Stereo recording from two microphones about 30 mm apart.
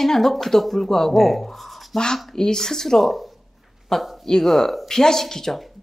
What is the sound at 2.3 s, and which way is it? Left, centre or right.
Speech, centre.